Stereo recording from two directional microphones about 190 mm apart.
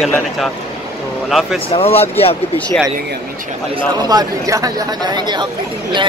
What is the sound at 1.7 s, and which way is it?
Speech, 30° left (ahead or behind).